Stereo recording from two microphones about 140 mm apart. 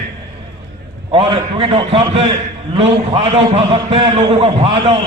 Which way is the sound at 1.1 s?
40° right (ahead or behind).